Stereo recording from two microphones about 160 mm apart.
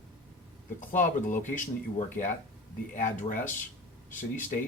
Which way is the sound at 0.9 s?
55° left (ahead or behind).